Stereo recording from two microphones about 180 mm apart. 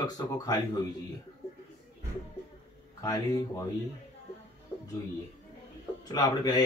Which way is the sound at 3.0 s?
20° left (ahead or behind).